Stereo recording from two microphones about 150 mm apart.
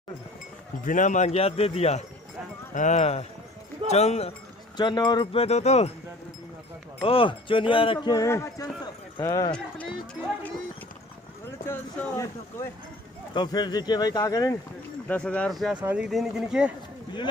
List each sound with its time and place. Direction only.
0.8 s speech: 60° left (ahead or behind)
4.7 s speech: 30° left (ahead or behind); by 5.9 s 45° left (ahead or behind)
7.0 s speech: 35° left (ahead or behind)
11.6 s speech: 15° left (ahead or behind)
13.3 s speech: 30° left (ahead or behind)
15.0 s speech: 10° left (ahead or behind)